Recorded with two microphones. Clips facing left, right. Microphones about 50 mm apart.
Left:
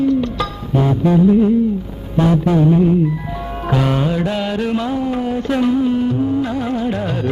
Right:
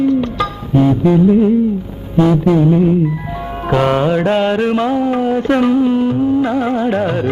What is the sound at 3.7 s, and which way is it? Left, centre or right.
Mantra, right.